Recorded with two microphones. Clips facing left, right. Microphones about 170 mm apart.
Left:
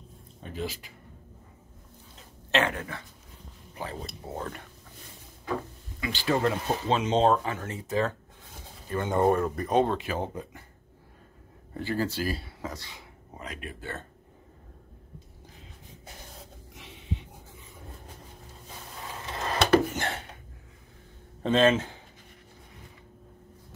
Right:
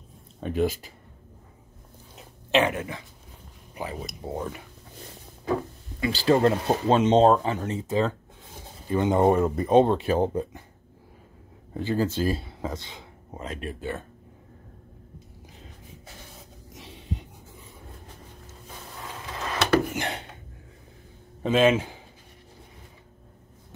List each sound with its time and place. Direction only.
0.4 s speech: 65° right (ahead or behind)
2.1 s a sound: 15° right (ahead or behind)
3.7 s speech: 15° right (ahead or behind)
5.9 s speech: 30° right (ahead or behind)
7.5 s speech: 25° right (ahead or behind)
11.7 s speech: 15° right (ahead or behind)
13.7 s speech: 15° right (ahead or behind)
16.7 s a sound: 35° right (ahead or behind)
19.9 s a sound: 15° right (ahead or behind)
21.4 s speech: 10° right (ahead or behind)